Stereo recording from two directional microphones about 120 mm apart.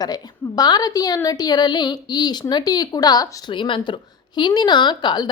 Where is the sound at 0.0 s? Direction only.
35° left (ahead or behind).